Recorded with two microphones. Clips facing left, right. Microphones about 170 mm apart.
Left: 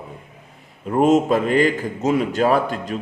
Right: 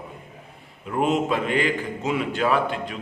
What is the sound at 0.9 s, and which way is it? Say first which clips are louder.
A man's voice: left 7 dB; 40° left (ahead or behind).